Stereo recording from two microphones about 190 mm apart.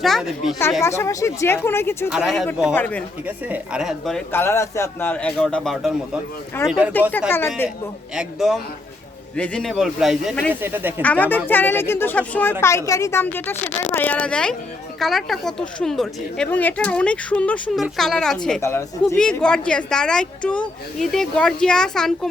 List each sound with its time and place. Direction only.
0.0 s speech: centre (ahead or behind)
0.8 s speech: 15° left (ahead or behind)
2.0 s speech: centre (ahead or behind)
2.7 s speech: 10° left (ahead or behind)
3.2 s speech: 5° right (ahead or behind)
7.3 s speech: 10° left (ahead or behind)
8.1 s speech: centre (ahead or behind)
11.0 s speech: 10° left (ahead or behind)
18.6 s speech: 15° left (ahead or behind)
19.0 s speech: 5° left (ahead or behind)